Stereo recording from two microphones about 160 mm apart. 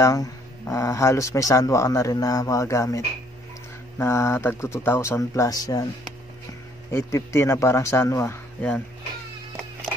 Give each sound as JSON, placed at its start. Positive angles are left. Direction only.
{"t": 0.0, "sound": "speech", "side_deg": 20}
{"t": 4.0, "sound": "a man's voice", "side_deg": 15}
{"t": 6.9, "sound": "a man's voice", "side_deg": 15}